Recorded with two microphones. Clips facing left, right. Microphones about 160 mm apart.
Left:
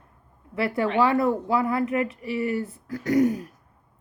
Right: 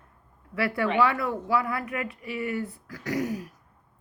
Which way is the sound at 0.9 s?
45° left (ahead or behind).